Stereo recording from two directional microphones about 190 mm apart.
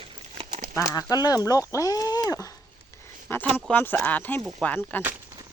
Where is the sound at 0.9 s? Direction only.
20° left (ahead or behind).